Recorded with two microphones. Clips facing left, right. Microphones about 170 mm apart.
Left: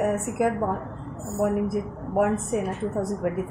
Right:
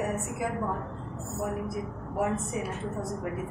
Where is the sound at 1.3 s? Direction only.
55° left (ahead or behind).